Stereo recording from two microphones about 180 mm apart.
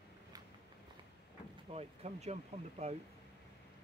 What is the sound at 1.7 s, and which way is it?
Speech, 35° right (ahead or behind).